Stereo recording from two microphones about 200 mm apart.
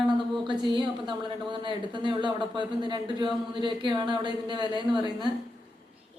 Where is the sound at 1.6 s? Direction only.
25° right (ahead or behind).